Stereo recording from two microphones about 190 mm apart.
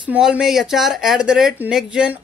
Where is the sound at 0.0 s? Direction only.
5° right (ahead or behind).